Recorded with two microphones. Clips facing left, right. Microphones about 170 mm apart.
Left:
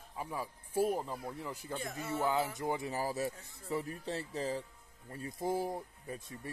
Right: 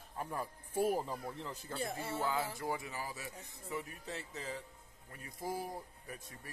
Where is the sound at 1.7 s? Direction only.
30° right (ahead or behind).